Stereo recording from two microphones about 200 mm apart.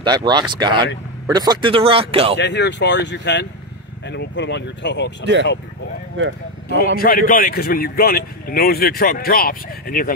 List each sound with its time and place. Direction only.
0.0 s speech: 20° right (ahead or behind)
2.3 s speech: 60° left (ahead or behind)
5.2 s speech: 65° right (ahead or behind)
7.0 s speech: 45° left (ahead or behind)